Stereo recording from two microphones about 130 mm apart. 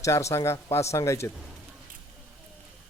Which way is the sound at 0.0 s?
25° left (ahead or behind).